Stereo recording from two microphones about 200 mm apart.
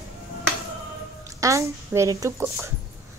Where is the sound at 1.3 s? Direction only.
15° right (ahead or behind).